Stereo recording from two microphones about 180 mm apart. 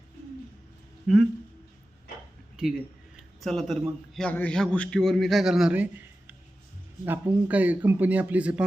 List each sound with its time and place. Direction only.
1.0 s a man's voice: centre (ahead or behind)
2.6 s a man's voice: 5° right (ahead or behind)